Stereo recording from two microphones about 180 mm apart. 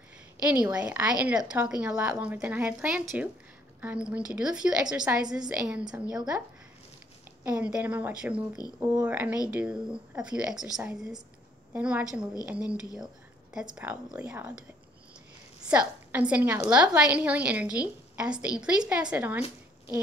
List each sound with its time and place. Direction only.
0.5 s a woman's voice: 5° right (ahead or behind)
7.4 s a woman's voice: 5° right (ahead or behind)
15.7 s a woman's voice: 5° right (ahead or behind)